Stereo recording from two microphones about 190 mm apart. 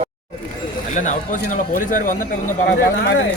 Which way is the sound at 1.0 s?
45° left (ahead or behind).